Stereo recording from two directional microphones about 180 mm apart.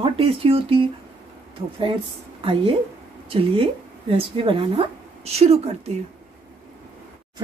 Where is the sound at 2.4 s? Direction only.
30° right (ahead or behind).